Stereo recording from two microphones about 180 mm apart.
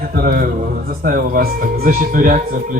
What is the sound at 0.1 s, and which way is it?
Speech, 55° right (ahead or behind).